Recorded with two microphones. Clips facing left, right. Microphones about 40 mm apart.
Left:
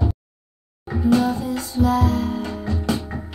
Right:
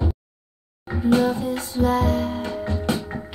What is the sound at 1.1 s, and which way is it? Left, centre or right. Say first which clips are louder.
Music: even; right.